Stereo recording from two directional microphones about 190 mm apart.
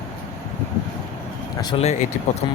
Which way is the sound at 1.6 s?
30° left (ahead or behind).